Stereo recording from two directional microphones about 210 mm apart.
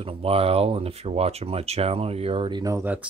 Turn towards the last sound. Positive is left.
turn(degrees=-10)  # may be behind; listen again after turning